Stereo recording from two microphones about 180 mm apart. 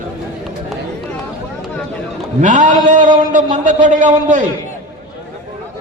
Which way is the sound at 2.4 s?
45° right (ahead or behind).